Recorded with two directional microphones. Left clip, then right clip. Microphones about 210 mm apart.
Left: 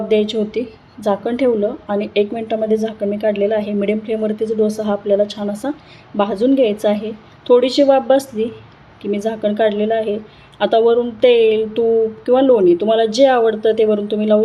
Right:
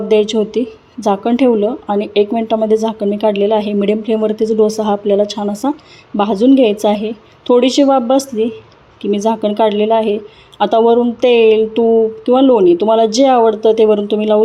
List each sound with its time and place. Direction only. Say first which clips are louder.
0.1 s speech: right 5 dB; 25° right (ahead or behind)